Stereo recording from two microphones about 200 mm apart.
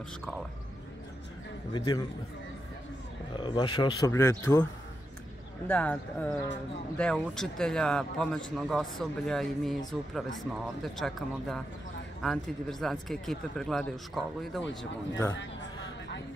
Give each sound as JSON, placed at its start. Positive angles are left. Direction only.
{"t": 1.7, "sound": "speech", "side_deg": 20}
{"t": 3.3, "sound": "speech", "side_deg": 25}
{"t": 5.7, "sound": "a man's voice", "side_deg": 5}
{"t": 15.3, "sound": "a sound", "side_deg": 65}